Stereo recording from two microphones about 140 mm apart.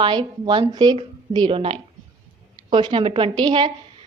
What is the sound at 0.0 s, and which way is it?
A woman's voice, 30° right (ahead or behind).